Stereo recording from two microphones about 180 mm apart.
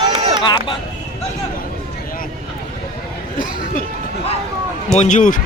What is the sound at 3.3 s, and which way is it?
Chatter, 50° left (ahead or behind).